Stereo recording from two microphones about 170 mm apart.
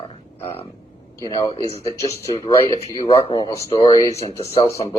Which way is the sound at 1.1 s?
20° left (ahead or behind).